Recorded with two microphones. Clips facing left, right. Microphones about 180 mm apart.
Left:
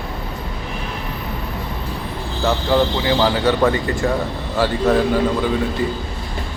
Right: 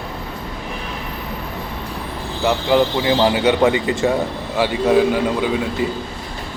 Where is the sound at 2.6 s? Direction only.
15° right (ahead or behind).